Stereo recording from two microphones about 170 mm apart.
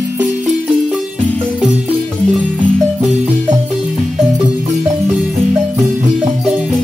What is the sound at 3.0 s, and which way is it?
Music, 10° right (ahead or behind).